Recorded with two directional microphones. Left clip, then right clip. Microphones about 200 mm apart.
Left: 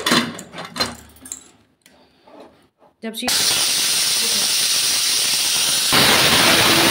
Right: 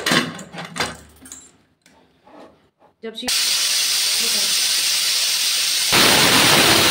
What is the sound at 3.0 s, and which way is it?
Hiss, 60° left (ahead or behind).